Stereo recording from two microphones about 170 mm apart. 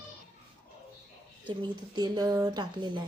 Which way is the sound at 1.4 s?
25° right (ahead or behind).